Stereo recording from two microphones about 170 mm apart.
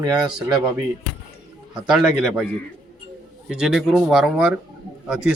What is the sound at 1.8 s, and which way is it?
Speech, centre (ahead or behind).